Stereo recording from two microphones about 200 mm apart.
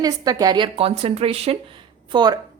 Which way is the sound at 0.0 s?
20° right (ahead or behind).